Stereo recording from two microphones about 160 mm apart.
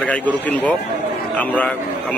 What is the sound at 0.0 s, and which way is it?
Speech, 10° left (ahead or behind).